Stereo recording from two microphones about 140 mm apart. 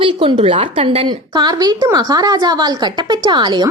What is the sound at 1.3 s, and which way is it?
A woman's voice, 30° right (ahead or behind).